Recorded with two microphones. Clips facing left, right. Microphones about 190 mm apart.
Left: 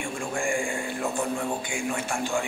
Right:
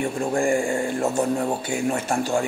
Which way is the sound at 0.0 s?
35° right (ahead or behind).